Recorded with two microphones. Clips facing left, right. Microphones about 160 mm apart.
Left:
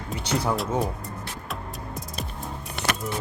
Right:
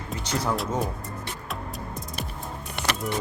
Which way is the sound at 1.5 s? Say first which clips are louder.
Even; centre (ahead or behind).